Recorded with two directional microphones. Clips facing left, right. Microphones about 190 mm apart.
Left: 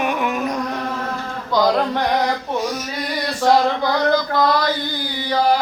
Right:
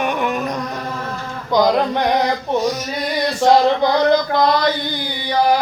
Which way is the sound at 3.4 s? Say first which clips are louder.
Right 3 dB; 20° right (ahead or behind).